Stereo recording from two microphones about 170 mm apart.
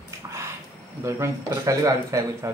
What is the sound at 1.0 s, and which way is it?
A man's voice, 15° right (ahead or behind).